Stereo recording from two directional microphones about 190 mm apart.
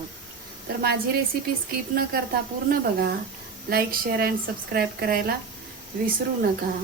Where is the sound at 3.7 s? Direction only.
55° right (ahead or behind).